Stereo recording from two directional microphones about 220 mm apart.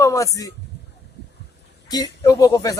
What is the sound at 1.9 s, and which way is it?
Speech, 15° left (ahead or behind).